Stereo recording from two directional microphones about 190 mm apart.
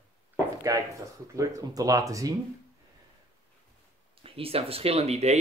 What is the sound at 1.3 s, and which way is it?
Speech, 15° right (ahead or behind).